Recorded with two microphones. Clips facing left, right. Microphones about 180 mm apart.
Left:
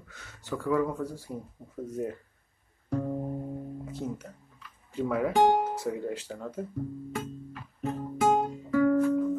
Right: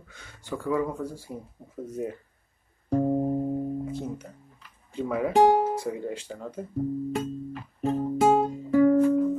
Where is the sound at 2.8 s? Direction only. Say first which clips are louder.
Right 7 dB; 25° right (ahead or behind).